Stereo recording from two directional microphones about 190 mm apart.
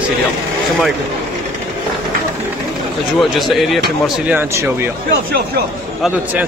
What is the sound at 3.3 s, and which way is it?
Speech, centre (ahead or behind).